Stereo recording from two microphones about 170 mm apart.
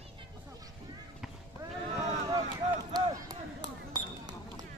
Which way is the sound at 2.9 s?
25° right (ahead or behind).